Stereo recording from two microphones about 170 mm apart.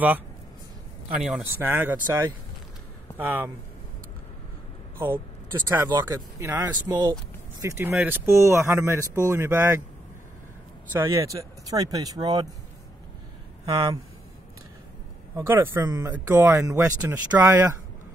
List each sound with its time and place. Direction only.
1.2 s speech: 10° right (ahead or behind)
4.9 s speech: 10° right (ahead or behind)
7.6 s speech: 15° right (ahead or behind)
10.9 s speech: 15° right (ahead or behind)
13.7 s speech: 20° right (ahead or behind)
15.3 s speech: 15° right (ahead or behind)